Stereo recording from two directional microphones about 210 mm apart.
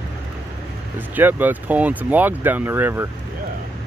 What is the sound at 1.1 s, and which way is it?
Speech, 10° right (ahead or behind).